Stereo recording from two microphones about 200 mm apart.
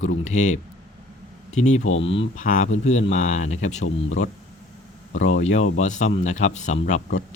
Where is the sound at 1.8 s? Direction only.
80° left.